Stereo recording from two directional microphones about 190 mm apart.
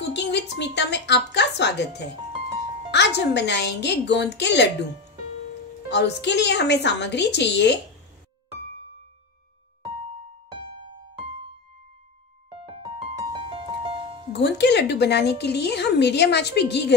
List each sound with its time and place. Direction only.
0.1 s a woman's voice: 65° left (ahead or behind)
5.9 s speech: 65° left (ahead or behind)
12.7 s music: 30° right (ahead or behind)
14.3 s speech: 65° left (ahead or behind)